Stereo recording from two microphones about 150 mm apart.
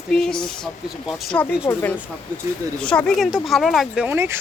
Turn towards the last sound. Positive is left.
turn(degrees=-15)  # may be behind; listen again after turning